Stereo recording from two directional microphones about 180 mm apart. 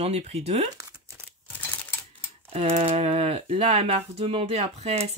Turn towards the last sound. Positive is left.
turn(degrees=-35)  # may be behind; listen again after turning